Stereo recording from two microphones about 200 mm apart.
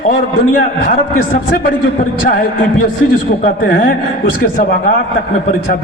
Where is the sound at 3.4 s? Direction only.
45° left (ahead or behind).